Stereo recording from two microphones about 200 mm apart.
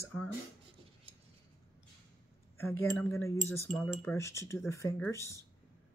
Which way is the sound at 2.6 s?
10° left (ahead or behind).